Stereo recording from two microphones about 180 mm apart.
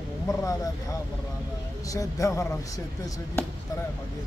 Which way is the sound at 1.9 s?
20° left (ahead or behind).